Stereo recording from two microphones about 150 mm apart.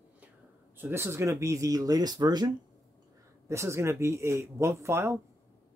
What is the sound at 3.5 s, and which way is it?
Speech, 20° right (ahead or behind).